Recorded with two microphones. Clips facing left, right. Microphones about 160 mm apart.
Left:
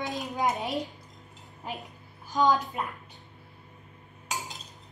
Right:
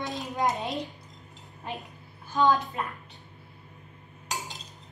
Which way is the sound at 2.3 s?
15° left (ahead or behind).